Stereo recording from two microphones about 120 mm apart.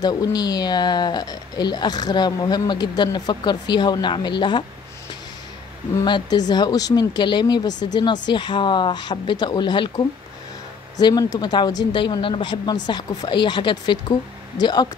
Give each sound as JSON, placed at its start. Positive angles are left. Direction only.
{"t": 0.0, "sound": "speech", "side_deg": 35}
{"t": 6.0, "sound": "speech", "side_deg": 40}